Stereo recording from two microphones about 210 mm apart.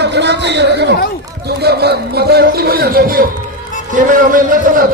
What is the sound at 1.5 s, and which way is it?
A man's voice, 50° right (ahead or behind).